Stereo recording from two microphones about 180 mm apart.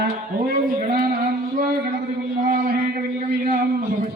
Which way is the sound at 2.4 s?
50° right (ahead or behind).